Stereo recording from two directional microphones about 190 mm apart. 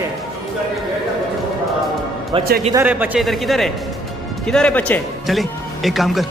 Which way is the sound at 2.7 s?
10° right (ahead or behind).